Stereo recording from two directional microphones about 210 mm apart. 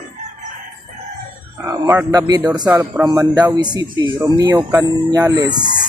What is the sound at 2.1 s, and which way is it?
Speech, 20° right (ahead or behind).